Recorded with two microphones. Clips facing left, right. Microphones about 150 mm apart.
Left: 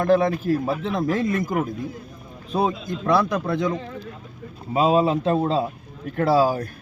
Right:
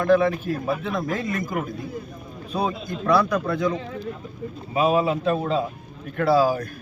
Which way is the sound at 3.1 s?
25° left (ahead or behind).